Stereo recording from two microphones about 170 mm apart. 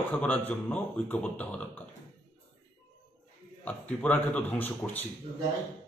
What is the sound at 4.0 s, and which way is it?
A man's voice, 10° left (ahead or behind).